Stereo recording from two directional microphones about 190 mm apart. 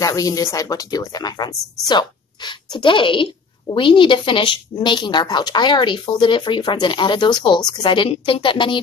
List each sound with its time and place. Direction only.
0.0 s speech: 15° left (ahead or behind)